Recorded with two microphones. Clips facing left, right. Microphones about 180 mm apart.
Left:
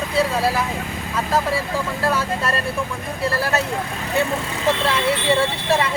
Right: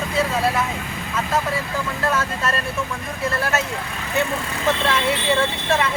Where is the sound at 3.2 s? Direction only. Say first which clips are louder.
Left 2 dB; 35° left (ahead or behind).